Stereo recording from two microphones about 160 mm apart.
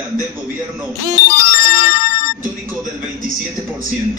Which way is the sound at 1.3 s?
70° left (ahead or behind).